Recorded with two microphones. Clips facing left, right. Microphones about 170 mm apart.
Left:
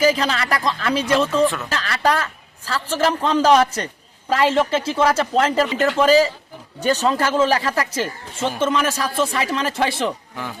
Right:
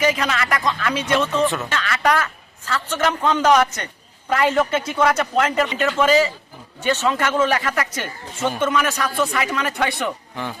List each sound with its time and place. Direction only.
0.0 s a man's voice: 35° left (ahead or behind)